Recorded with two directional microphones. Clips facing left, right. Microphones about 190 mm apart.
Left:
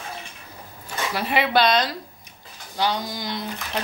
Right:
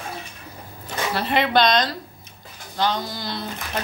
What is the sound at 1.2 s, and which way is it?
A woman's voice, 10° left (ahead or behind).